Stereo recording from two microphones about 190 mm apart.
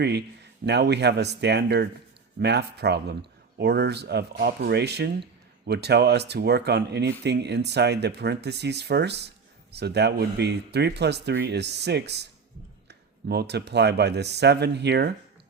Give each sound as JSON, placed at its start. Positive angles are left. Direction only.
{"t": 0.0, "sound": "speech", "side_deg": -60}